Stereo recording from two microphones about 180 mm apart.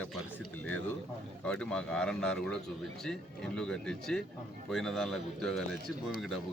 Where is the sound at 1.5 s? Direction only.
5° left (ahead or behind).